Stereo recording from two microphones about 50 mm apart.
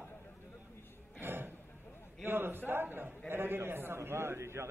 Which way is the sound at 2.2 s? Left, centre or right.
Right.